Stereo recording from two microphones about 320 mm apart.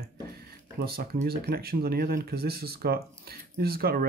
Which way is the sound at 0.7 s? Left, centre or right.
Right.